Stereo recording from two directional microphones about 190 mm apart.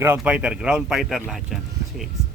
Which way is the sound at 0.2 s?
5° right (ahead or behind).